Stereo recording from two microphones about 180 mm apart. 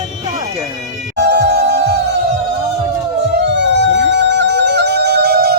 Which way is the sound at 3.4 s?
75° right (ahead or behind).